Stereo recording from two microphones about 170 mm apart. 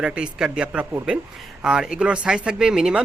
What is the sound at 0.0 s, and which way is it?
Speech, 5° right (ahead or behind).